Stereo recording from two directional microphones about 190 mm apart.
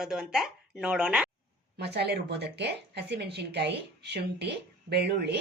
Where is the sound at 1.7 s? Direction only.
60° right (ahead or behind).